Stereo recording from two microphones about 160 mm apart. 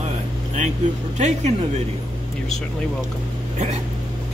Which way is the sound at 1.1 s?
45° right (ahead or behind).